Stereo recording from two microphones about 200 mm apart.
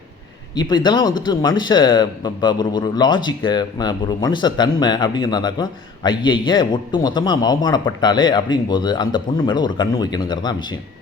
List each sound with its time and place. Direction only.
0.5 s a man's voice: 20° left (ahead or behind)